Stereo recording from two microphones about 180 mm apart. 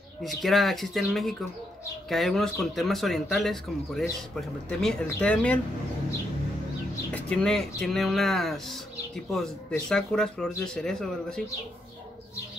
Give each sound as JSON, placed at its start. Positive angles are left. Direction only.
{"t": 0.2, "sound": "speech", "side_deg": 0}
{"t": 7.1, "sound": "speech", "side_deg": 5}